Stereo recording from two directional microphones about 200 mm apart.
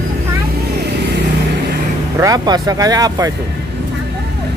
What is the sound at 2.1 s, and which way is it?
Speech, 15° right (ahead or behind).